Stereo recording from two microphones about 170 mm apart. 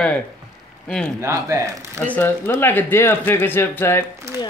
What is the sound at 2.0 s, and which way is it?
Speech, 10° left (ahead or behind).